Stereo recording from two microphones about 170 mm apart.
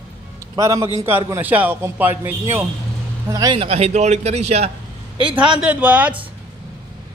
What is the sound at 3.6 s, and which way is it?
Speech, 35° right (ahead or behind).